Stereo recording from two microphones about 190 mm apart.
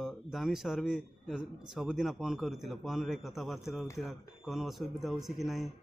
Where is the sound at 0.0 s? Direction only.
Centre (ahead or behind).